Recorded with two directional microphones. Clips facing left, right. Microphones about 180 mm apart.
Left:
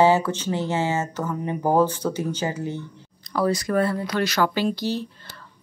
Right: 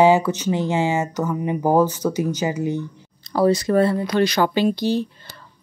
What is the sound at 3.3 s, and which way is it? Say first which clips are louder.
Speech: right 5 dB; 30° right (ahead or behind).